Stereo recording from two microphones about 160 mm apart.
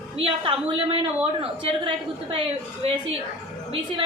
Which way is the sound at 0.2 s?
30° right (ahead or behind).